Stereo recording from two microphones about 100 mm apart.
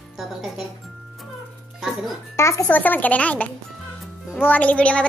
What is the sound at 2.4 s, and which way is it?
Speech, 30° left (ahead or behind).